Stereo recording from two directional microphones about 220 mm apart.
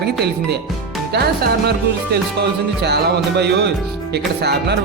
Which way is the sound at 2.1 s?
50° right (ahead or behind).